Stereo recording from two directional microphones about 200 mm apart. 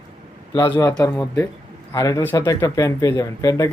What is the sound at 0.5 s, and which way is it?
Speech, 15° left (ahead or behind).